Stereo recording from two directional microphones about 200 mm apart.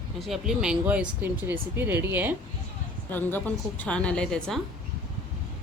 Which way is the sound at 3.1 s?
10° left (ahead or behind).